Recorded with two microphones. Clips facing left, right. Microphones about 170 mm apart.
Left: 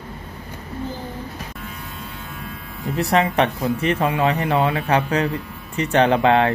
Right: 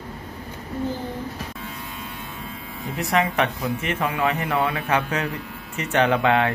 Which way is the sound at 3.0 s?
35° left (ahead or behind).